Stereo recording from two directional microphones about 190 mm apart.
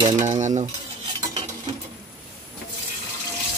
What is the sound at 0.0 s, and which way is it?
Cutlery, 30° right (ahead or behind).